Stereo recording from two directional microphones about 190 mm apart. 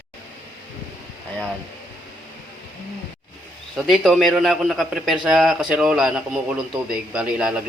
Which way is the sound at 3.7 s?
Centre (ahead or behind).